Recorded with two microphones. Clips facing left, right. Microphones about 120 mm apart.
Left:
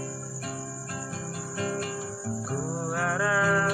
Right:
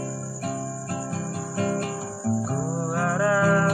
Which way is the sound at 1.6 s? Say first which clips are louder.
Right 5 dB; 45° right (ahead or behind).